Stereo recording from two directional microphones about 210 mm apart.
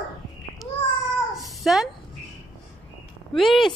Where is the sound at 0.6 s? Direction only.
Centre (ahead or behind).